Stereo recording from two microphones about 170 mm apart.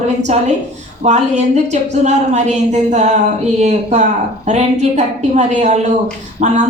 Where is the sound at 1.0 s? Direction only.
40° right (ahead or behind).